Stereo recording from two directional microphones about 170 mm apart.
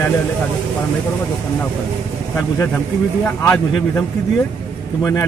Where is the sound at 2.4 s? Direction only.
10° left (ahead or behind).